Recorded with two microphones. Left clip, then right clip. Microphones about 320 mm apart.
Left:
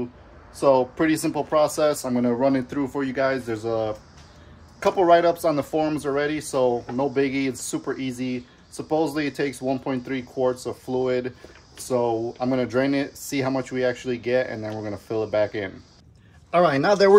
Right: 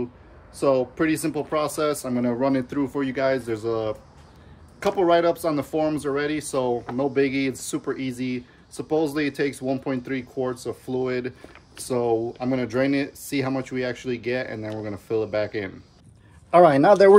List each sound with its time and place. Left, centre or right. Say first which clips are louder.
0.6 s speech: left 2 dB; centre
16.4 s a man's voice: right 4 dB; centre